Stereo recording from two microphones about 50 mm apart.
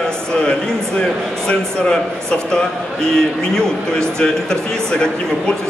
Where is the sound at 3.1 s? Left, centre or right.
Centre.